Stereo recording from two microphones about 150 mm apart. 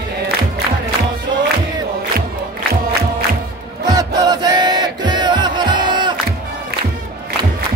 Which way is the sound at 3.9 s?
25° right (ahead or behind).